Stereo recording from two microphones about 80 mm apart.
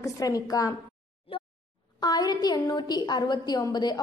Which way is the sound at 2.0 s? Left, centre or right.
Left.